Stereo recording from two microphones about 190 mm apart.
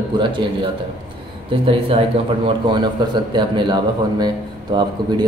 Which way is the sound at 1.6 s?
30° right (ahead or behind).